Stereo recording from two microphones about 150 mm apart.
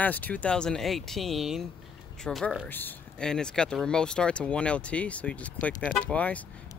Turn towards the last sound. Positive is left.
turn(degrees=10)  # may be behind; listen again after turning